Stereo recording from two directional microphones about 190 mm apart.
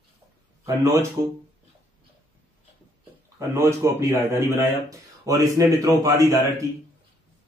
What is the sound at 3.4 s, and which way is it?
Speech, 15° right (ahead or behind).